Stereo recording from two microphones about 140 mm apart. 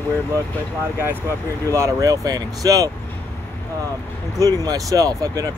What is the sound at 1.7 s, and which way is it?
Speech, 25° right (ahead or behind).